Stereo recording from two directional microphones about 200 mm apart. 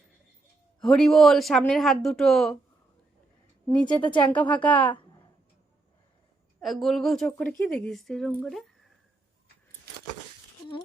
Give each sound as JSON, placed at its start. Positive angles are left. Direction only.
{"t": 0.8, "sound": "speech", "side_deg": 5}
{"t": 3.8, "sound": "speech", "side_deg": 25}
{"t": 4.4, "sound": "speech", "side_deg": 10}
{"t": 6.6, "sound": "speech", "side_deg": 0}
{"t": 8.4, "sound": "a sound", "side_deg": 0}